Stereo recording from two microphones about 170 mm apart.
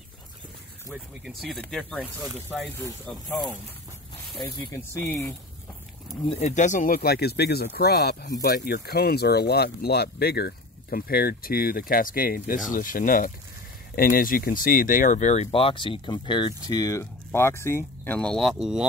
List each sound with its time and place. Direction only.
0.9 s speech: 5° right (ahead or behind)
3.1 s speech: centre (ahead or behind)
4.4 s speech: 30° left (ahead or behind)
6.3 s speech: 45° left (ahead or behind); by 18.9 s 5° right (ahead or behind)